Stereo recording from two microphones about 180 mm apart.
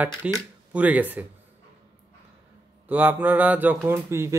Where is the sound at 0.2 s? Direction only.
5° right (ahead or behind).